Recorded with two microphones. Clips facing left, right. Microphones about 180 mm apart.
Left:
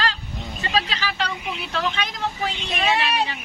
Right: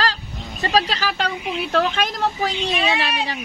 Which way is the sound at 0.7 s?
40° right (ahead or behind).